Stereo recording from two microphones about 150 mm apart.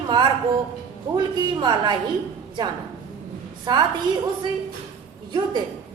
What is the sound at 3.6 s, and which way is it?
Speech, 30° right (ahead or behind).